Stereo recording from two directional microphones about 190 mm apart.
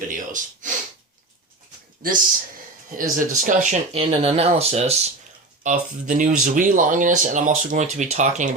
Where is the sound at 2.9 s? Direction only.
45° right (ahead or behind).